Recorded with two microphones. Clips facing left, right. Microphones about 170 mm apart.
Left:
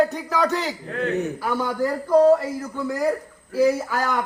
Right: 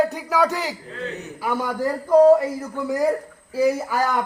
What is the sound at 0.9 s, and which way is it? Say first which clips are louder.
Speech: left 7 dB; 60° left (ahead or behind).